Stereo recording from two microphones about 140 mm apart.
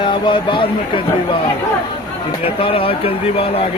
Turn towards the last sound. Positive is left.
turn(degrees=45)  # may be behind; listen again after turning